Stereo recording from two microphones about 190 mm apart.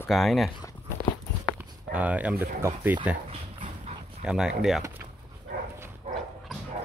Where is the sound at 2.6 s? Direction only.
10° right (ahead or behind).